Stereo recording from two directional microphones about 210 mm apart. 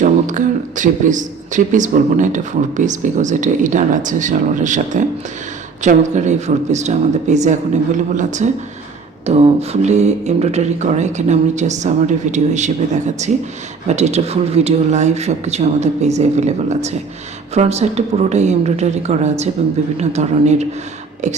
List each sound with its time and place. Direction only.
0.0 s speech: 35° right (ahead or behind)